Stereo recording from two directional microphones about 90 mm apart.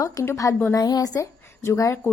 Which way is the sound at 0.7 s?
45° left (ahead or behind).